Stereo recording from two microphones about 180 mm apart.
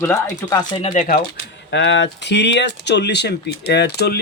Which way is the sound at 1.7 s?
85° left.